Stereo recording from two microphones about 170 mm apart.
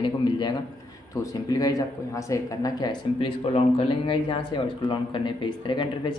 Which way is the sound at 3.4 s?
35° left (ahead or behind).